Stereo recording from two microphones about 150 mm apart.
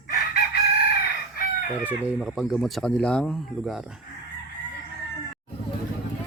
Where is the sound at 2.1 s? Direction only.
5° right (ahead or behind).